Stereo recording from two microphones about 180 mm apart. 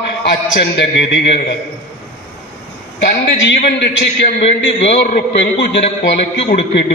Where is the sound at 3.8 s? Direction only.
70° left (ahead or behind).